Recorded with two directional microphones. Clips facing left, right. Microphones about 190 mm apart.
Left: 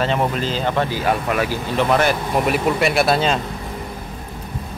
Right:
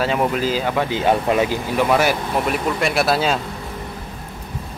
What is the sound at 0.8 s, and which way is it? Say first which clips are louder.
Speech: right 3 dB; 25° right (ahead or behind).